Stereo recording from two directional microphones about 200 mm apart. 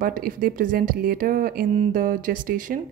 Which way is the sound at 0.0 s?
45° right (ahead or behind).